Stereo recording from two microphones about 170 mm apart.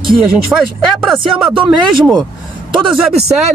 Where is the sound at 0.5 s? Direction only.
5° right (ahead or behind).